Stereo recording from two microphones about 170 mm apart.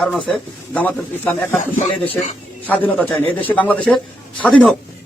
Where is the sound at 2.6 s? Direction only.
10° left (ahead or behind).